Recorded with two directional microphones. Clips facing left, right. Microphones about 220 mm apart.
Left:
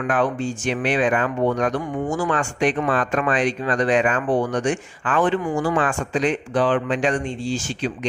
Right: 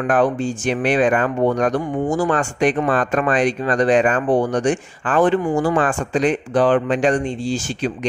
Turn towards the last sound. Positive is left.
turn(degrees=-35)  # may be behind; listen again after turning